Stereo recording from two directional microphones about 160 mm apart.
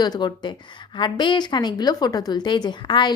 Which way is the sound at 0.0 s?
25° left (ahead or behind).